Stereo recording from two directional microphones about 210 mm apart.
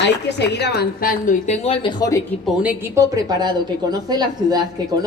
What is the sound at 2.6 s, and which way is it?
A woman's voice, 15° right (ahead or behind).